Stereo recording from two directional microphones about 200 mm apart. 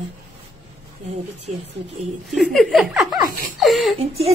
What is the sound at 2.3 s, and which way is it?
A woman's voice, centre (ahead or behind).